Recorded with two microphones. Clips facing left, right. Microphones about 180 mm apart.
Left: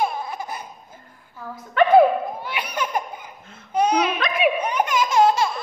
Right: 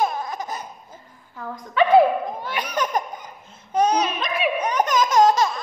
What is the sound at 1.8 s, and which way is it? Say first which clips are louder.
Speech: left 1 dB; 55° left (ahead or behind).